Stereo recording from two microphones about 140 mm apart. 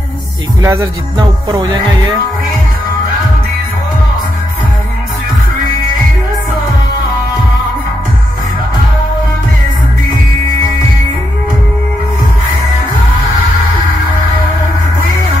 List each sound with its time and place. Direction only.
0.6 s music: 25° right (ahead or behind)